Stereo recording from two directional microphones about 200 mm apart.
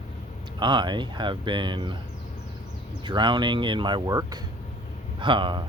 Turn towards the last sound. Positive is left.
turn(degrees=-25)  # may be behind; listen again after turning